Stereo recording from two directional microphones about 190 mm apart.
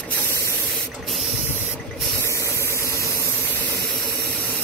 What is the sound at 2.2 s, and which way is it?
Engine, 15° left (ahead or behind).